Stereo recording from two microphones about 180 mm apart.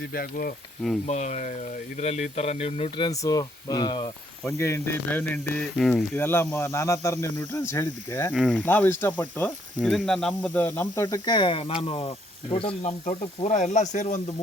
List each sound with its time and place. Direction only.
0.1 s speech: 55° left (ahead or behind)
1.0 s speech: 40° left (ahead or behind)
3.1 s speech: 20° left (ahead or behind)
8.3 s speech: centre (ahead or behind); by 12.9 s 30° left (ahead or behind)
13.1 s speech: 40° left (ahead or behind)